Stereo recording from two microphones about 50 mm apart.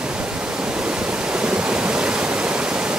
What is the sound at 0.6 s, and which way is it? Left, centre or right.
Waterfall, centre.